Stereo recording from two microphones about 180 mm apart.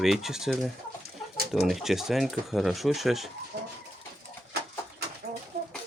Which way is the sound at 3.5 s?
65° right (ahead or behind).